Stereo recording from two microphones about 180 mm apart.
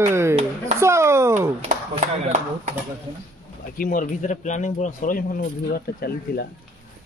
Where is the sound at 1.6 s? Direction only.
40° right (ahead or behind).